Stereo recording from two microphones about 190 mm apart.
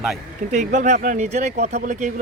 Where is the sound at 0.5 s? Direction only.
40° right (ahead or behind).